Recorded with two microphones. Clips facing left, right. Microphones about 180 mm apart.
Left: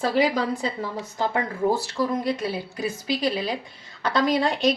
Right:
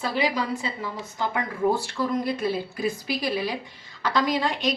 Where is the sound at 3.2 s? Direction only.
25° left (ahead or behind).